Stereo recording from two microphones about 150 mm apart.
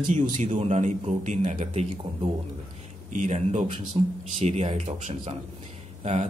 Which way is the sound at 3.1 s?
50° right (ahead or behind).